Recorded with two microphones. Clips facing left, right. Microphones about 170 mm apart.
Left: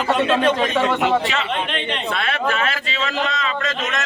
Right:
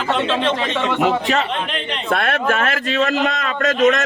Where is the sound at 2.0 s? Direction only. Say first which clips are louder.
Right 6 dB; 50° right (ahead or behind).